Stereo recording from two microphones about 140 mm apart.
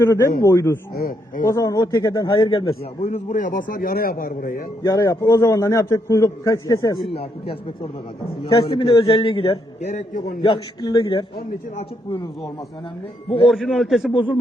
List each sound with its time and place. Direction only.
0.0 s a man's voice: 20° left (ahead or behind)
0.9 s speech: 90° left
1.5 s a man's voice: 25° left (ahead or behind)
3.1 s a man's voice: 65° left (ahead or behind); by 4.6 s 90° left
4.8 s a man's voice: 25° left (ahead or behind)
7.1 s a man's voice: 40° left (ahead or behind)
13.5 s a man's voice: centre (ahead or behind)